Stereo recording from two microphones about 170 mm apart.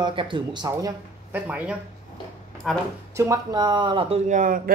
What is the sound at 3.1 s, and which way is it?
Speech, 20° right (ahead or behind).